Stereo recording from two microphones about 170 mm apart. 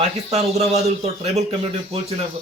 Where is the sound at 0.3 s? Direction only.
35° right (ahead or behind).